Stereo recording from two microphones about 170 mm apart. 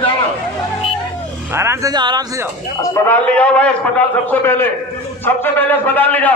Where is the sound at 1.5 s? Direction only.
15° right (ahead or behind).